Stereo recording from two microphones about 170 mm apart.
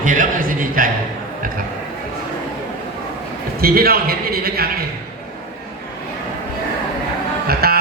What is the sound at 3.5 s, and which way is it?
A man's voice, 60° right (ahead or behind).